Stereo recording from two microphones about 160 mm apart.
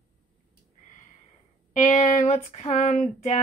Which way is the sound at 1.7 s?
50° left (ahead or behind).